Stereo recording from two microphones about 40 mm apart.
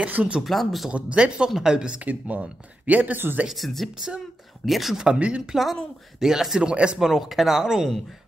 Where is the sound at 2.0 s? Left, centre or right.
Right.